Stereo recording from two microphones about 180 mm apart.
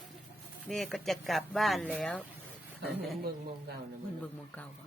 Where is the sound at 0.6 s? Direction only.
Centre (ahead or behind).